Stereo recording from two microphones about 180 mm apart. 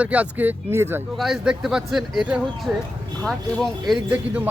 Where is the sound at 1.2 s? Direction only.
Centre (ahead or behind).